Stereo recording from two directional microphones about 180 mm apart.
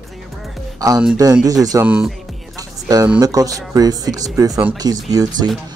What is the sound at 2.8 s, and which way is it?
Speech, 20° right (ahead or behind).